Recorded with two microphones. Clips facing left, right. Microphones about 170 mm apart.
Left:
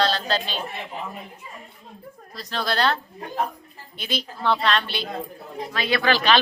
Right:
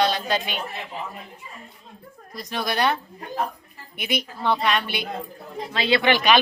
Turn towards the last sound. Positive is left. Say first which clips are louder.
# right 1 dB
turn(degrees=-15)  # may be behind; listen again after turning